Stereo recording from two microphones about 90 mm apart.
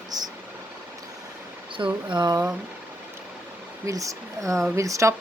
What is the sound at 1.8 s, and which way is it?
Speech, 50° right (ahead or behind).